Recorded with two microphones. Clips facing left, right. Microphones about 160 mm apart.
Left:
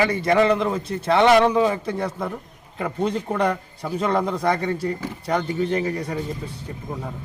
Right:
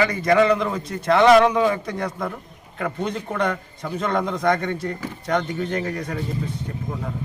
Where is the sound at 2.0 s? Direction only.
5° left (ahead or behind).